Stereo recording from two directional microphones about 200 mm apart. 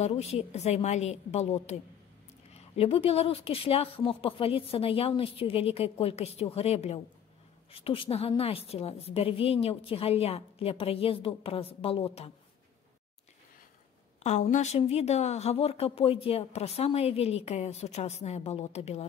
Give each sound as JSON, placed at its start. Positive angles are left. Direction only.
{"t": 0.0, "sound": "a woman's voice", "side_deg": 35}
{"t": 14.2, "sound": "a woman's voice", "side_deg": 35}